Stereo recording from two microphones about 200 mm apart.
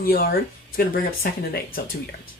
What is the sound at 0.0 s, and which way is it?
Speech, 50° left (ahead or behind).